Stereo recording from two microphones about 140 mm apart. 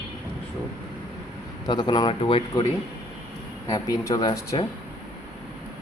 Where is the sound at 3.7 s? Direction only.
25° left (ahead or behind).